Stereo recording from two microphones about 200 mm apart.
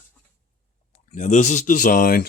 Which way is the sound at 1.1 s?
35° left (ahead or behind).